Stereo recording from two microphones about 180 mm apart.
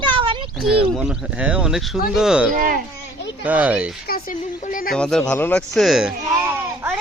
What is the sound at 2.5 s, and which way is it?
Speech, 50° right (ahead or behind).